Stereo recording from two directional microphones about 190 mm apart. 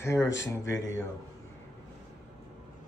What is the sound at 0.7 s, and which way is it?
Speech, 80° left.